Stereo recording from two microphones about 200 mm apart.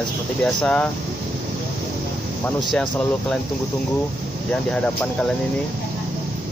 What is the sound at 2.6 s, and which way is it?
Speech, 5° left (ahead or behind).